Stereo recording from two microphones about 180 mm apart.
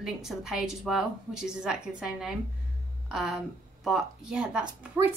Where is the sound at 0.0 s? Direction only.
5° right (ahead or behind).